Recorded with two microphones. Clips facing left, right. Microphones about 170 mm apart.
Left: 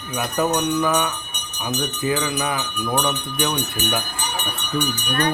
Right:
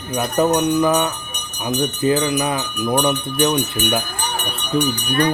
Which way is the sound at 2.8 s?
20° right (ahead or behind).